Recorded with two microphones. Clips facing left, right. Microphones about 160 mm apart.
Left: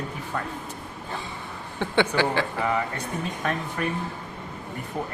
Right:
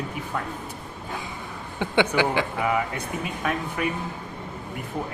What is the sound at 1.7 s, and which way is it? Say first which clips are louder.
A man's voice: right 1 dB; 15° right (ahead or behind).